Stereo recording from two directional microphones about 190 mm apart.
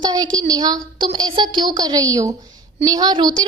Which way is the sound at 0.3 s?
20° right (ahead or behind).